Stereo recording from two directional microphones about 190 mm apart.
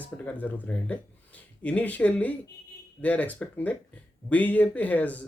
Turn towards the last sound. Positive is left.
turn(degrees=10)  # may be behind; listen again after turning